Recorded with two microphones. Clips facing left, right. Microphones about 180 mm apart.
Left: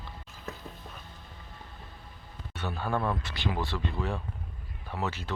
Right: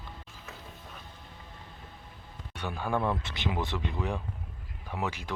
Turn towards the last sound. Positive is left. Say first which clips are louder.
# even
turn(degrees=-10)  # may be behind; listen again after turning